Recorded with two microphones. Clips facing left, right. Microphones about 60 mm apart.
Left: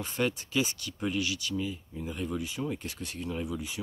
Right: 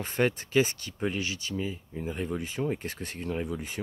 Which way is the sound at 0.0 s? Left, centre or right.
Right.